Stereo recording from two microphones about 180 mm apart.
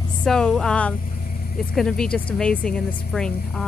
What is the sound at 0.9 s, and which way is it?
Vehicle, 50° left (ahead or behind).